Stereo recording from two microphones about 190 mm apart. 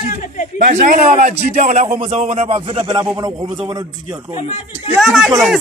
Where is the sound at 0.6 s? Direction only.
45° right (ahead or behind); by 3.0 s 30° right (ahead or behind).